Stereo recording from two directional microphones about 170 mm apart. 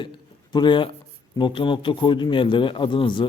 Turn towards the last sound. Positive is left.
turn(degrees=30)  # may be behind; listen again after turning